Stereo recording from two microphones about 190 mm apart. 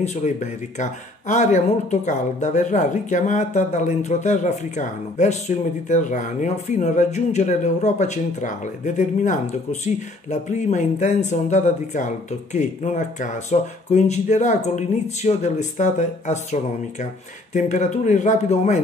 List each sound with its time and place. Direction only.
0.0 s speech: 40° left (ahead or behind)